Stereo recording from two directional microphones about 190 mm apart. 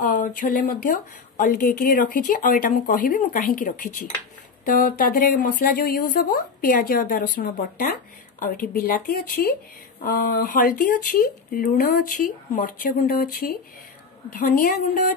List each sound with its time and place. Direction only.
0.0 s a woman's voice: 45° left (ahead or behind)
13.0 s a woman's voice: 50° left (ahead or behind)
14.5 s a woman's voice: 45° left (ahead or behind)